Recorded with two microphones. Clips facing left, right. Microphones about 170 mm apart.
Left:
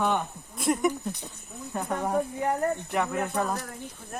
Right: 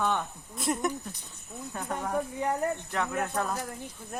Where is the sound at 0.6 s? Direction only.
Centre (ahead or behind).